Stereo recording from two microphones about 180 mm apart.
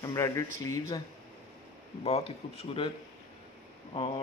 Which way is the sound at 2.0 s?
35° left (ahead or behind).